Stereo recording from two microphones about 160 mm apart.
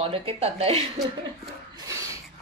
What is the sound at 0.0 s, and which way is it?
Speech, 35° right (ahead or behind).